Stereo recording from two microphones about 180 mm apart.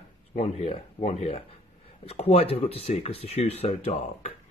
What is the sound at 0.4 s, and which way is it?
Speech, 35° left (ahead or behind).